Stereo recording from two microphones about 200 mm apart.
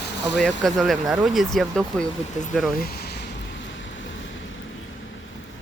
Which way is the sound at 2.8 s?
50° left (ahead or behind).